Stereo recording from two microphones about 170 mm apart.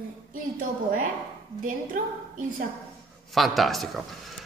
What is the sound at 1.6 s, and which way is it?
A woman's voice, 50° right (ahead or behind).